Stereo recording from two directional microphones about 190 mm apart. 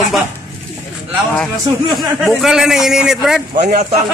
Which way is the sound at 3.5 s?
40° right (ahead or behind).